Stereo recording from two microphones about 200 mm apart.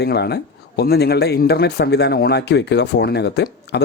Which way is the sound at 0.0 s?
55° left (ahead or behind).